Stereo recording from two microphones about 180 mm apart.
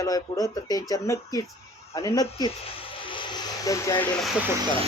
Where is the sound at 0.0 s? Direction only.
20° left (ahead or behind).